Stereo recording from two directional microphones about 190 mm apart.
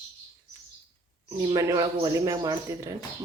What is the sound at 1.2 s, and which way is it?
Speech, 15° right (ahead or behind).